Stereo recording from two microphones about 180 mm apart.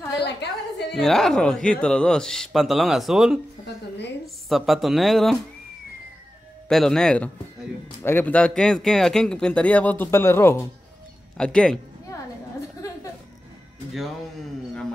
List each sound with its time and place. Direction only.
0.2 s a sound: 70° left (ahead or behind)
0.9 s speech: centre (ahead or behind)
4.5 s speech: centre (ahead or behind)
6.7 s speech: 5° left (ahead or behind)